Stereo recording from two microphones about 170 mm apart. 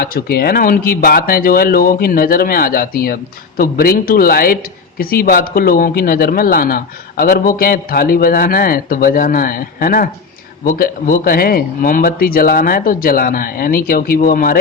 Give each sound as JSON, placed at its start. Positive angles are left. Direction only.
{"t": 0.0, "sound": "speech", "side_deg": 65}